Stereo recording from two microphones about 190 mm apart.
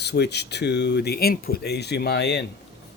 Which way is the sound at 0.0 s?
60° left (ahead or behind).